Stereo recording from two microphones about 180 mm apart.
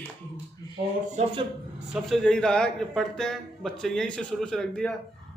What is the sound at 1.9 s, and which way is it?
A man's voice, centre (ahead or behind).